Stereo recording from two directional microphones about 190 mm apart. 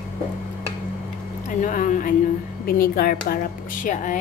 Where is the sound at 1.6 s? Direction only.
40° left (ahead or behind).